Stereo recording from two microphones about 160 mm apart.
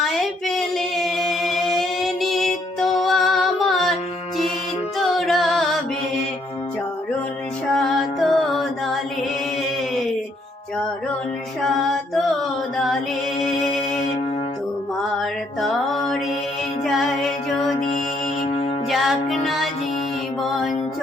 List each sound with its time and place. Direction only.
0.0 s female singing: centre (ahead or behind)
4.9 s music: centre (ahead or behind)
7.8 s music: centre (ahead or behind)
11.6 s music: centre (ahead or behind)
13.4 s music: centre (ahead or behind)
15.2 s mantra: centre (ahead or behind)
16.8 s music: centre (ahead or behind)
18.4 s music: 35° left (ahead or behind)
18.9 s music: centre (ahead or behind)